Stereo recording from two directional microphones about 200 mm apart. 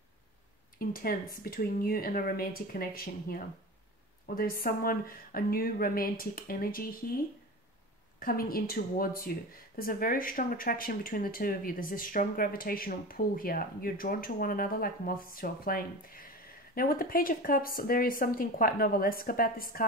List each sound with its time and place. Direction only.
0.7 s speech: 45° left (ahead or behind)
8.2 s speech: 45° left (ahead or behind)